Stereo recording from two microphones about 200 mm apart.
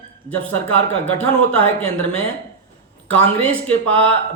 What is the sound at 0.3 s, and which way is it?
A man's voice, 5° left (ahead or behind).